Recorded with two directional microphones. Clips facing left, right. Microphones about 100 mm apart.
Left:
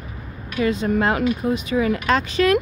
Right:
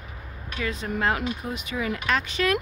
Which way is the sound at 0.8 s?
45° left (ahead or behind).